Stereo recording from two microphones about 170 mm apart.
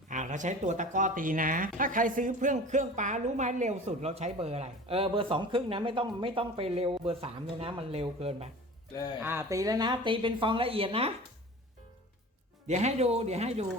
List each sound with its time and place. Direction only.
0.1 s speech: 45° right (ahead or behind)
9.2 s speech: 15° right (ahead or behind); by 11.1 s 35° right (ahead or behind)
12.6 s speech: 40° right (ahead or behind)